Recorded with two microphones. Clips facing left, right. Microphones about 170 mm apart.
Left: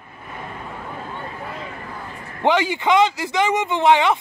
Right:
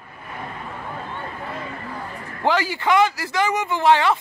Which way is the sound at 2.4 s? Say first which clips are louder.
Left 3 dB; 20° left (ahead or behind).